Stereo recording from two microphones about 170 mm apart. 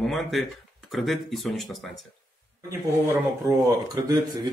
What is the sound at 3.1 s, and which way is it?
Speech, 20° right (ahead or behind).